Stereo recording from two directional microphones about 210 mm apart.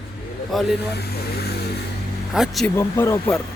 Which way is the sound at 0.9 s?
50° left (ahead or behind).